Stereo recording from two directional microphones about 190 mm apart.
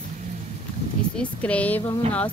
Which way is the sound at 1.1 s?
5° left (ahead or behind).